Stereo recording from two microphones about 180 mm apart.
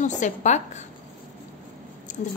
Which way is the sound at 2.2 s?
45° left (ahead or behind).